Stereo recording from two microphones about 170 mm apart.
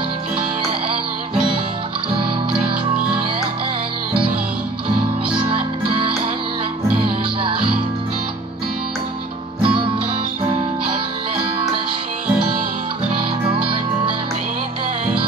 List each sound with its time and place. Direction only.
5.5 s music: 30° right (ahead or behind)
9.6 s music: 30° right (ahead or behind)